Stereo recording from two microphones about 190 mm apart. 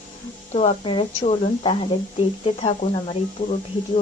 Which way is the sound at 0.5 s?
35° left (ahead or behind).